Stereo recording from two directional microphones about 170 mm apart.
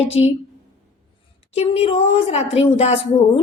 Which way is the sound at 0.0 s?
35° left (ahead or behind).